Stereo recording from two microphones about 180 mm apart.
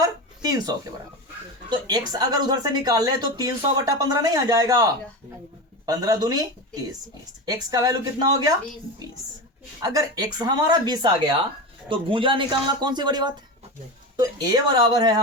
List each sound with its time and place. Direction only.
0.0 s a sound: 20° right (ahead or behind)
1.7 s speech: 20° right (ahead or behind)
7.4 s speech: 20° right (ahead or behind)
9.8 s speech: 20° right (ahead or behind)